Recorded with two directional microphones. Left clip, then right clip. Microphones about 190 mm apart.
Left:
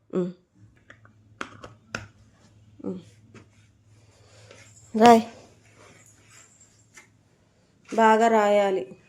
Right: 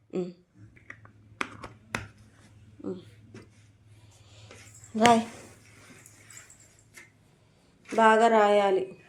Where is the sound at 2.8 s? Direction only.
40° left (ahead or behind).